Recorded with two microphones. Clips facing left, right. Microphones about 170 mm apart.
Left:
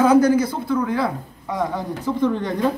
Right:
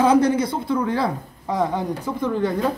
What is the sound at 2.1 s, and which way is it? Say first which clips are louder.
Speech: left 3 dB; 10° right (ahead or behind).